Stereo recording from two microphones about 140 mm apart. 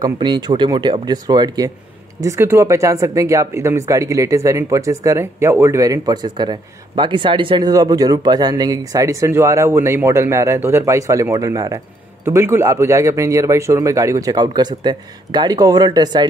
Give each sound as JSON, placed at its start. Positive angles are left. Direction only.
{"t": 0.0, "sound": "speech", "side_deg": -30}
{"t": 2.2, "sound": "speech", "side_deg": -20}